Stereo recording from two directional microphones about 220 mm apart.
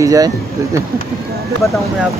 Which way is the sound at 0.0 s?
15° right (ahead or behind).